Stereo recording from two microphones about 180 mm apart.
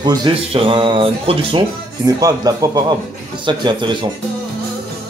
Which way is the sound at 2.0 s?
20° right (ahead or behind).